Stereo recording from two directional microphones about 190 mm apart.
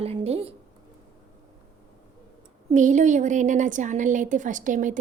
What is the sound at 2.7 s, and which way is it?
A woman's voice, 40° right (ahead or behind).